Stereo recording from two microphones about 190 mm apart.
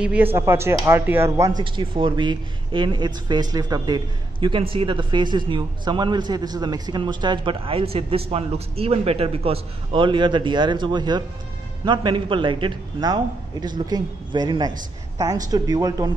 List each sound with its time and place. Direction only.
0.0 s speech: 5° right (ahead or behind)
1.6 s speech: 25° right (ahead or behind)